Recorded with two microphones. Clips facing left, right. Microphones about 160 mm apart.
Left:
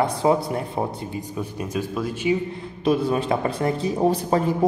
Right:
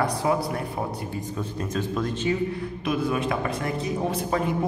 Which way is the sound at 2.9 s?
30° left (ahead or behind).